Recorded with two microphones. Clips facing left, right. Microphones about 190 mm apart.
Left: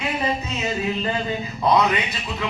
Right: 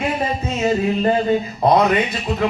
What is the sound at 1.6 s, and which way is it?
Speech, 45° right (ahead or behind).